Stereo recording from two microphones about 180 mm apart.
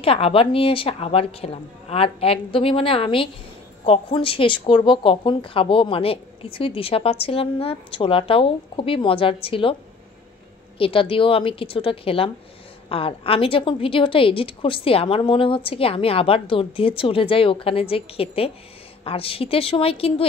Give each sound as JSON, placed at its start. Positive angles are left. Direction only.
{"t": 0.0, "sound": "speech", "side_deg": 30}
{"t": 10.8, "sound": "speech", "side_deg": 30}